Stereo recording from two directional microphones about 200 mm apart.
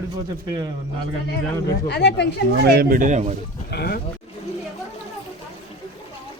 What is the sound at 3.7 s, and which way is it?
Speech, 50° left (ahead or behind).